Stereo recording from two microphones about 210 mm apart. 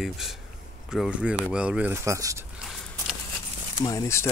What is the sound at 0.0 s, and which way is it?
Speech, centre (ahead or behind).